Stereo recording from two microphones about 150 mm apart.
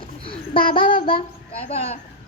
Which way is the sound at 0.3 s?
35° left (ahead or behind).